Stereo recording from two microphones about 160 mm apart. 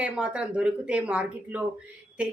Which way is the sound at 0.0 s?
5° right (ahead or behind).